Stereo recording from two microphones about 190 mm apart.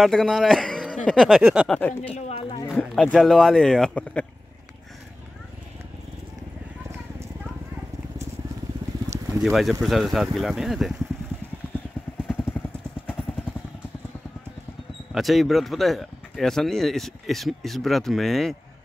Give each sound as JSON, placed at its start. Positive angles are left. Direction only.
{"t": 0.0, "sound": "speech", "side_deg": 0}
{"t": 2.1, "sound": "speech", "side_deg": 35}
{"t": 2.7, "sound": "speech", "side_deg": 0}
{"t": 9.4, "sound": "speech", "side_deg": 0}
{"t": 12.3, "sound": "vehicle", "side_deg": 10}
{"t": 15.1, "sound": "speech", "side_deg": 0}